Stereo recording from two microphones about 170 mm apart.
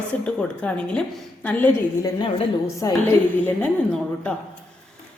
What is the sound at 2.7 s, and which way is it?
Speech, 15° left (ahead or behind).